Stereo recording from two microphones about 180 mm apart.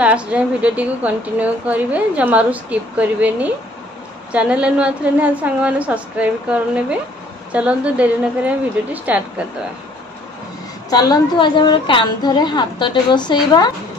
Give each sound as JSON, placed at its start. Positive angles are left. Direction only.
{"t": 0.0, "sound": "a woman's voice", "side_deg": -5}
{"t": 7.5, "sound": "a woman's voice", "side_deg": -5}
{"t": 10.9, "sound": "a woman's voice", "side_deg": 20}